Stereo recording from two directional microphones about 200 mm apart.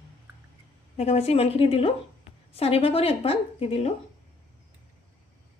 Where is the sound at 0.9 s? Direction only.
30° left (ahead or behind).